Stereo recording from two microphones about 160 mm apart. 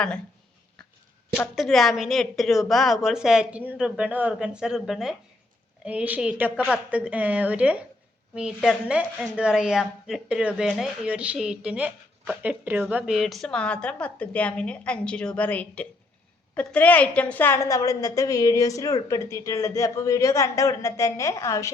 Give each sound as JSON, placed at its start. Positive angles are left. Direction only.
{"t": 1.5, "sound": "a woman's voice", "side_deg": 0}